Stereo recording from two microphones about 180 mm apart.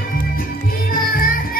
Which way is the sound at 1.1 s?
50° left (ahead or behind).